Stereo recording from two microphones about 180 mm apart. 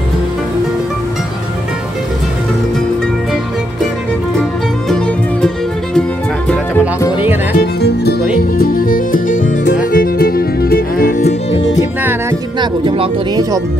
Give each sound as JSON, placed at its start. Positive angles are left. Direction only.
{"t": 4.4, "sound": "music", "side_deg": 5}
{"t": 7.5, "sound": "music", "side_deg": 65}
{"t": 12.0, "sound": "music", "side_deg": -10}
{"t": 12.5, "sound": "music", "side_deg": -30}